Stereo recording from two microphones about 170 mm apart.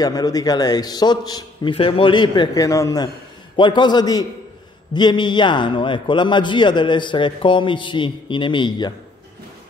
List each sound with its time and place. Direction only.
0.0 s a man's voice: 20° left (ahead or behind)